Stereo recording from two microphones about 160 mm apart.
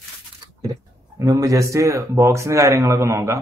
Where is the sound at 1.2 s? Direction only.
20° right (ahead or behind).